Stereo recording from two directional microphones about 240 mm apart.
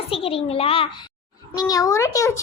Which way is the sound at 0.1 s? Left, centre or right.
Left.